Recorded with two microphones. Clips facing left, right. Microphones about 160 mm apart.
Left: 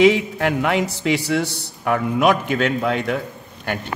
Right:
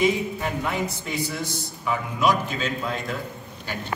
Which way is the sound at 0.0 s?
80° left.